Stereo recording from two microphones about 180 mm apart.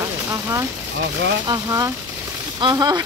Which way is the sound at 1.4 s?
20° right (ahead or behind).